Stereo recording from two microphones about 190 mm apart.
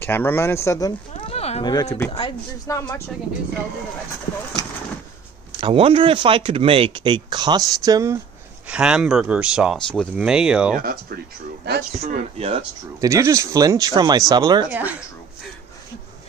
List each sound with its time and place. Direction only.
0.0 s speech: 10° left (ahead or behind)
1.3 s a sound: 35° left (ahead or behind)
1.7 s speech: 20° left (ahead or behind)
5.6 s speech: 30° right (ahead or behind)
8.6 s speech: 5° right (ahead or behind)
11.9 s speech: 30° right (ahead or behind)
13.0 s speech: 15° right (ahead or behind)
14.7 s speech: 10° right (ahead or behind)